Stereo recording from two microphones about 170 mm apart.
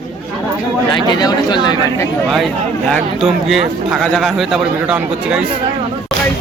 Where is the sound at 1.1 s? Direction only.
25° left (ahead or behind).